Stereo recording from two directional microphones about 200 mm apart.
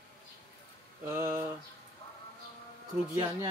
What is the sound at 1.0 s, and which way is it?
Speech, 15° right (ahead or behind).